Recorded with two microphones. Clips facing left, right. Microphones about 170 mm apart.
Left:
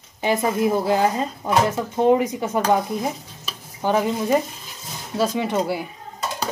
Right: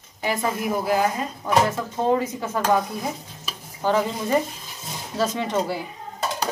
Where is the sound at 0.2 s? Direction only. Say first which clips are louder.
Left 5 dB; 25° left (ahead or behind).